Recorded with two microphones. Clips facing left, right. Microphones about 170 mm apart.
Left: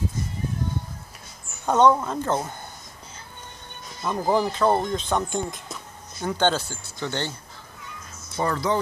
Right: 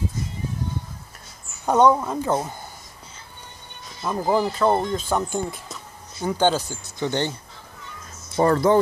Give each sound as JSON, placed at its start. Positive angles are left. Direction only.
{"t": 1.7, "sound": "speech", "side_deg": -10}
{"t": 4.0, "sound": "speech", "side_deg": -5}
{"t": 8.4, "sound": "speech", "side_deg": -45}